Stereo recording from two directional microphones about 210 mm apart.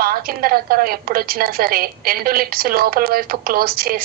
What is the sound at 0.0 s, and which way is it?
A woman's voice, 45° right (ahead or behind).